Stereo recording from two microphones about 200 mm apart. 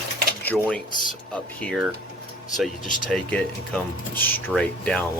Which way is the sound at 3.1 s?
5° left (ahead or behind).